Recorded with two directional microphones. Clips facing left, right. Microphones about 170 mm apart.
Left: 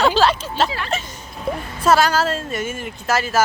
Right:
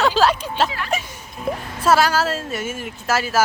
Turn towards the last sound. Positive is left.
turn(degrees=-5)  # may be behind; listen again after turning